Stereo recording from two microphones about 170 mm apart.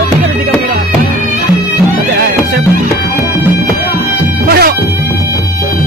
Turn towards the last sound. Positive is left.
turn(degrees=-65)  # may be behind; listen again after turning